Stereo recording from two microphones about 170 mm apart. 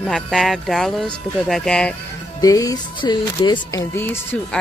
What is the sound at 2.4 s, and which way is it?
Speech, 20° left (ahead or behind).